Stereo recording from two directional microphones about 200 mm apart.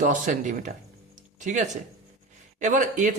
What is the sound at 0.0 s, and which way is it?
Speech, 40° right (ahead or behind).